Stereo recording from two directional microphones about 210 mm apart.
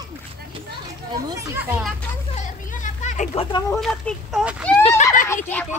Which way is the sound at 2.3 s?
35° left (ahead or behind).